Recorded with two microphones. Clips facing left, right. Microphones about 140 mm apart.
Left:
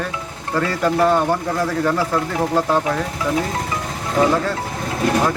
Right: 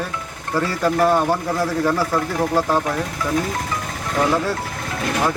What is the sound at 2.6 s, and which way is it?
Speech, 10° right (ahead or behind).